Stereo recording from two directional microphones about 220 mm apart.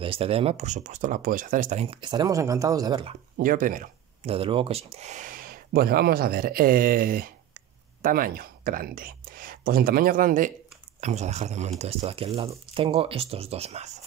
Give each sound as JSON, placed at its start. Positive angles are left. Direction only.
{"t": 0.0, "sound": "speech", "side_deg": -25}
{"t": 3.3, "sound": "speech", "side_deg": -40}